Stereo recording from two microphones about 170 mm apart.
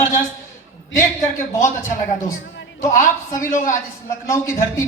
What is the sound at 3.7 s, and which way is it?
A man's voice, 20° left (ahead or behind).